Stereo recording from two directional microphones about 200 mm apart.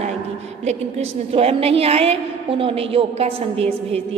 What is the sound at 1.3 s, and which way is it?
A woman's voice, 30° right (ahead or behind).